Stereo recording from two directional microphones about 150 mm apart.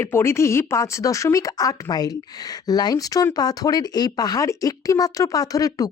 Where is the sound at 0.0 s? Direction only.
15° left (ahead or behind).